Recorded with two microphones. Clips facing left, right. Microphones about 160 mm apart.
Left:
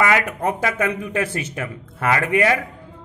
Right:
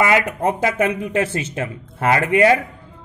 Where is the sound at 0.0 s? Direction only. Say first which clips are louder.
Right 2 dB; 20° right (ahead or behind).